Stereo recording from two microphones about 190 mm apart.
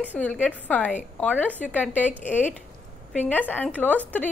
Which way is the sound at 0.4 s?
10° left (ahead or behind).